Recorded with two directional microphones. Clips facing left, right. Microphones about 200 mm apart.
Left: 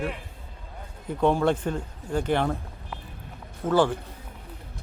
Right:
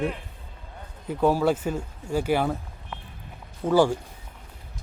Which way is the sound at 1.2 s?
5° right (ahead or behind).